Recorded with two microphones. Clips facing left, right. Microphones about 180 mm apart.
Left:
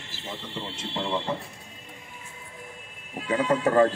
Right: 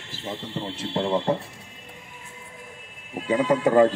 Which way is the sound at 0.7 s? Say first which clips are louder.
Right 6 dB; 45° right (ahead or behind).